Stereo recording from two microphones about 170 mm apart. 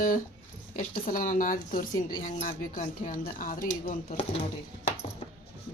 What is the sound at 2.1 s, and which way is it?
Speech, 40° left (ahead or behind).